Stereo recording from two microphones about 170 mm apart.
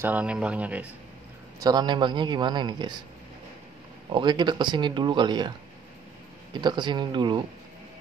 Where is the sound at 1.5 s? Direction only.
25° right (ahead or behind).